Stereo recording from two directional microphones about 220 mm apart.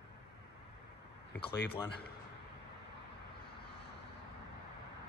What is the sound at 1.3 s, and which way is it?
Speech, 50° left (ahead or behind).